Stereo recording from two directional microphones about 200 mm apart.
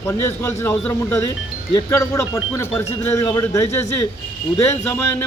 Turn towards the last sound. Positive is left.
turn(degrees=15)  # may be behind; listen again after turning